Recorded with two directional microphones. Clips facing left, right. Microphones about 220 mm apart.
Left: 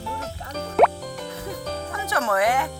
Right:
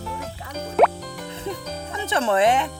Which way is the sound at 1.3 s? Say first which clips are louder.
Right 3 dB; 25° right (ahead or behind).